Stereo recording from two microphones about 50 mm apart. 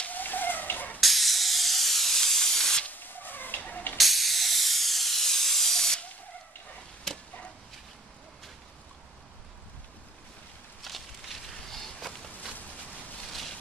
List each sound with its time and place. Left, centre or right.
0.0 s fowl: left
1.0 s steam: centre
2.9 s cat: left
4.0 s steam: centre
7.1 s a sound: centre
10.8 s walk: centre